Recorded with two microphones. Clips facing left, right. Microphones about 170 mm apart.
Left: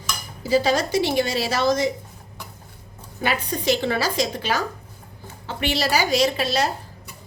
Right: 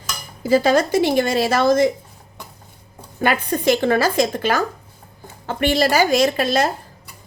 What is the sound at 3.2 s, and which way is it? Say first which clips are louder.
A woman's voice: right 5 dB; 50° right (ahead or behind).